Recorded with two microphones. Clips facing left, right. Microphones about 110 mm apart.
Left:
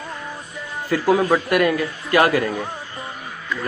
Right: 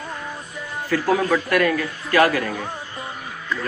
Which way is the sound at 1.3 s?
20° left (ahead or behind).